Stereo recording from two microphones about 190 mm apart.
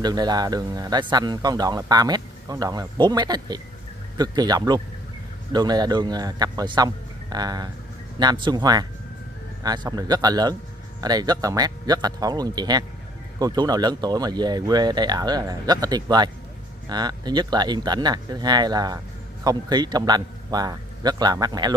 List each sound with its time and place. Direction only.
0.0 s speech: 20° right (ahead or behind)